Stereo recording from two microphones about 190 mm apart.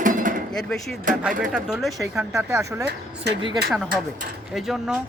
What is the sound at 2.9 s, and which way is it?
Speech, 60° right (ahead or behind).